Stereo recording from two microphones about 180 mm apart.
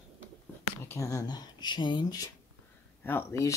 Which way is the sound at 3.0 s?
15° left (ahead or behind).